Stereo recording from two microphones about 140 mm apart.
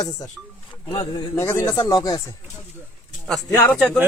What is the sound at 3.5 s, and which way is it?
Speech, 10° left (ahead or behind).